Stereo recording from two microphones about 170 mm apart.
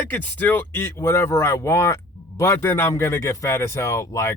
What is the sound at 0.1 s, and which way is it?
Speech, 10° left (ahead or behind).